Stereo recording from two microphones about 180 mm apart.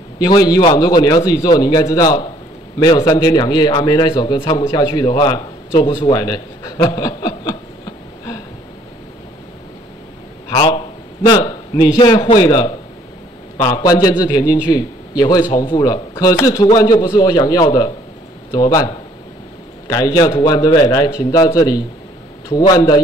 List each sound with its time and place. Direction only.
0.2 s a man's voice: 20° left (ahead or behind)
10.5 s a sound: 25° left (ahead or behind)
12.0 s a man's voice: 25° left (ahead or behind)